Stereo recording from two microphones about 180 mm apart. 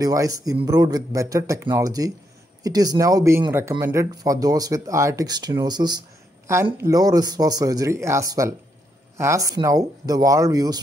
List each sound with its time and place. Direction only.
0.0 s speech: 20° right (ahead or behind)